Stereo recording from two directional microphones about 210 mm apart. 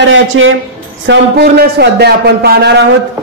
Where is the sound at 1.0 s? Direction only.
50° right (ahead or behind).